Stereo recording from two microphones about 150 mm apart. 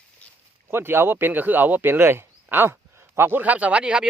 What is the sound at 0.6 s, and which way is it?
A man's voice, 15° right (ahead or behind).